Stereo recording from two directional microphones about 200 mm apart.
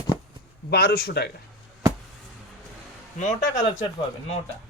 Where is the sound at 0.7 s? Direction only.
50° left (ahead or behind).